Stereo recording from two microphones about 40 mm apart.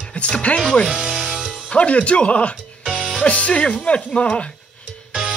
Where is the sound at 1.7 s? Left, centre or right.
Left.